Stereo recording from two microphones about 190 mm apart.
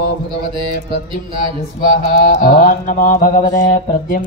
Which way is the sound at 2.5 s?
50° left (ahead or behind).